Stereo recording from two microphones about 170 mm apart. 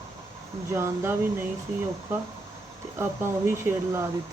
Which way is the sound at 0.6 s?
15° right (ahead or behind).